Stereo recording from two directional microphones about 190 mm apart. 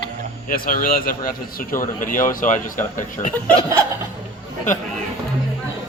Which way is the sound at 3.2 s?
30° left (ahead or behind).